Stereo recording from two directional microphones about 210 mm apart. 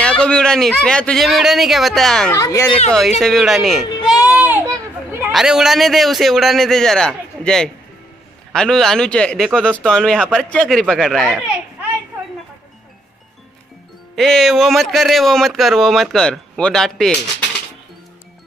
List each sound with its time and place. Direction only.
0.0 s speech: 5° left (ahead or behind)
2.3 s speech: 15° left (ahead or behind)
3.2 s speech: centre (ahead or behind)
4.0 s a sound: 20° left (ahead or behind)
4.3 s a sound: 10° right (ahead or behind)
5.3 s speech: centre (ahead or behind)
14.1 s speech: centre (ahead or behind)